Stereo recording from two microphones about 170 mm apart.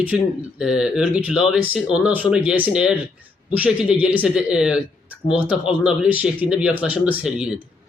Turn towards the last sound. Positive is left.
turn(degrees=-5)  # may be behind; listen again after turning